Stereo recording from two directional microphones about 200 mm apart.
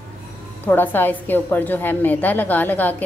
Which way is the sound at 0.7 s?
10° left (ahead or behind).